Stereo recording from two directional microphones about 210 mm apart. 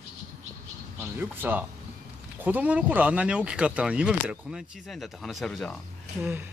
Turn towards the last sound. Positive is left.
turn(degrees=-10)  # may be behind; listen again after turning